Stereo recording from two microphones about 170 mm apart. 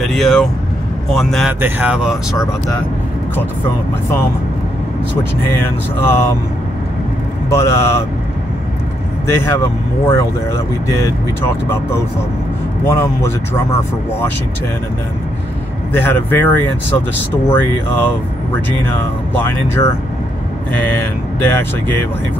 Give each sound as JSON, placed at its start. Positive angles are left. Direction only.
{"t": 0.0, "sound": "speech", "side_deg": 0}
{"t": 5.5, "sound": "speech", "side_deg": 15}
{"t": 7.4, "sound": "speech", "side_deg": 15}
{"t": 9.5, "sound": "speech", "side_deg": 15}
{"t": 12.8, "sound": "speech", "side_deg": 15}
{"t": 15.9, "sound": "speech", "side_deg": 10}